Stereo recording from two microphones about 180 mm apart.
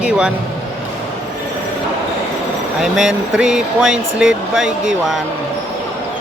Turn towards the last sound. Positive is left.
turn(degrees=-5)  # may be behind; listen again after turning